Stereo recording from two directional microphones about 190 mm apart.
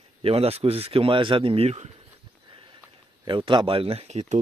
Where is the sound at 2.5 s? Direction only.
25° right (ahead or behind).